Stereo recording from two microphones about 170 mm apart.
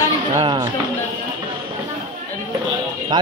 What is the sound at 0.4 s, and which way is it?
Speech, 25° right (ahead or behind).